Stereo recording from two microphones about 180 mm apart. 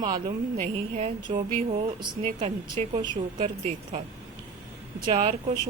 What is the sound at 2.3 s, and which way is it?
Speech, 40° right (ahead or behind).